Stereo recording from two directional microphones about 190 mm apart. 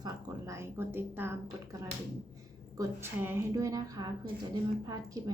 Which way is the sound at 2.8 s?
10° right (ahead or behind).